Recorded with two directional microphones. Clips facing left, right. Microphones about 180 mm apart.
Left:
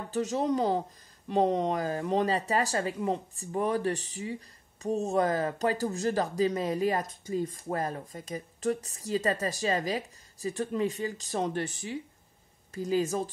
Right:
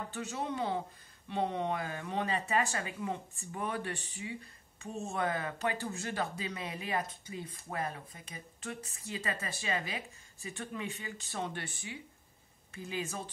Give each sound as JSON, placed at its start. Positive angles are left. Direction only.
{"t": 0.1, "sound": "speech", "side_deg": 40}